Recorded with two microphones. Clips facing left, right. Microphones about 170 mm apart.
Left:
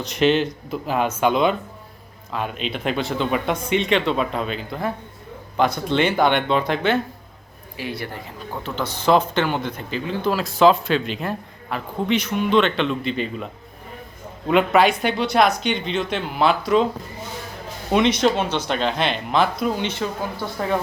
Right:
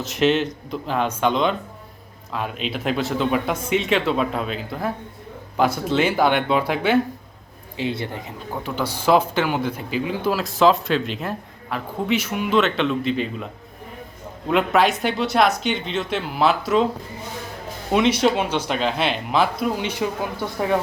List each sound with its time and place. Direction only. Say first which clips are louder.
0.0 s speech: left 1 dB; centre (ahead or behind)
7.8 s speech: right 4 dB; 20° right (ahead or behind)
8.6 s speech: even; 10° right (ahead or behind)
17.9 s speech: even; 5° right (ahead or behind)